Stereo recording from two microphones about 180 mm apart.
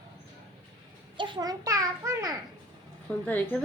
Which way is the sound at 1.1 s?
25° right (ahead or behind).